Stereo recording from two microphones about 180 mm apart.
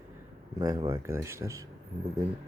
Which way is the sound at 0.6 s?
20° right (ahead or behind).